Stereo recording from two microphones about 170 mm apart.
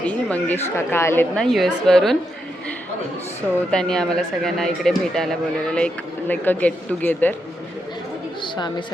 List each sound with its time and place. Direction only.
0.1 s a woman's voice: 10° left (ahead or behind)
1.5 s speech: centre (ahead or behind)
3.7 s speech: 5° left (ahead or behind)
8.4 s a sound: 25° left (ahead or behind)